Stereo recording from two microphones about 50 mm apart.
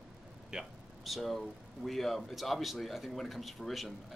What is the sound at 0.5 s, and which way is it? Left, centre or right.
Speech, centre.